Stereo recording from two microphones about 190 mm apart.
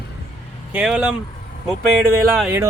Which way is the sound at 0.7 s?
5° right (ahead or behind).